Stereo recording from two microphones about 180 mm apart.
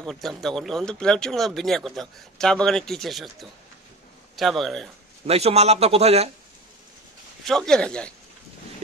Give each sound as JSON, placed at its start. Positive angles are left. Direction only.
{"t": 0.0, "sound": "speech", "side_deg": 0}
{"t": 5.2, "sound": "a man's voice", "side_deg": -35}
{"t": 7.4, "sound": "speech", "side_deg": 5}